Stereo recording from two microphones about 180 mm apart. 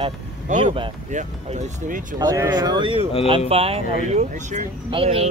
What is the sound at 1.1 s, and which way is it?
Speech, 40° right (ahead or behind).